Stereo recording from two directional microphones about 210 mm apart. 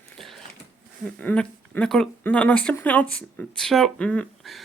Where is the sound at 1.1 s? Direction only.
5° left (ahead or behind).